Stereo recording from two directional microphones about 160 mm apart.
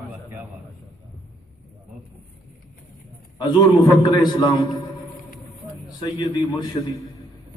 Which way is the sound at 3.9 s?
25° left (ahead or behind).